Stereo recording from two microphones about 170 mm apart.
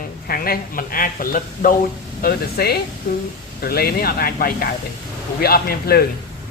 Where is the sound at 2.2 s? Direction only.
65° left (ahead or behind).